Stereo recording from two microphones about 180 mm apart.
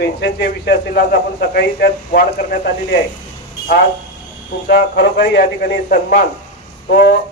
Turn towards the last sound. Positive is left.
turn(degrees=50)  # may be behind; listen again after turning